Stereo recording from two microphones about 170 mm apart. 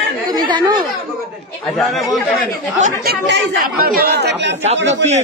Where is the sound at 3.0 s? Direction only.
90° right.